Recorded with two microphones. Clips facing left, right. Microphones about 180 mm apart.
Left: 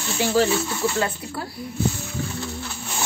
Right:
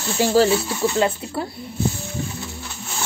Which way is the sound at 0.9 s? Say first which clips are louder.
Right 5 dB; 20° right (ahead or behind).